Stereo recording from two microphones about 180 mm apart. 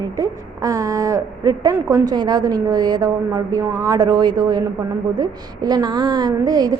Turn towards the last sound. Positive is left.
turn(degrees=-20)  # may be behind; listen again after turning